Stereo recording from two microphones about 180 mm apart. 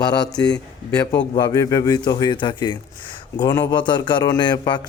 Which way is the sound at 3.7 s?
25° left (ahead or behind).